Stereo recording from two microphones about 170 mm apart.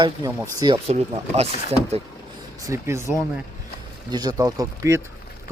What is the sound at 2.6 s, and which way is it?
Speech, 15° right (ahead or behind).